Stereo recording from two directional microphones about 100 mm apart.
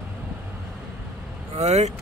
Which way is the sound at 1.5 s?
90° right.